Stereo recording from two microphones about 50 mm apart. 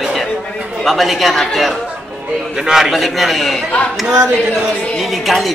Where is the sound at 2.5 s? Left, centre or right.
Centre.